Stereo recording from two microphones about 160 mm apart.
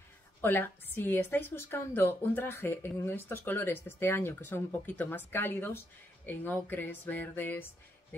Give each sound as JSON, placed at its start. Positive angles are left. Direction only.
{"t": 0.4, "sound": "a woman's voice", "side_deg": 10}